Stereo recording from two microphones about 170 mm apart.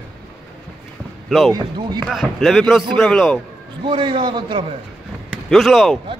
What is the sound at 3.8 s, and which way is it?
Speech, 30° right (ahead or behind).